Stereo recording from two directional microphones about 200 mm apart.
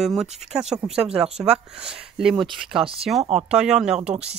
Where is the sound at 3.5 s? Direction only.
5° right (ahead or behind).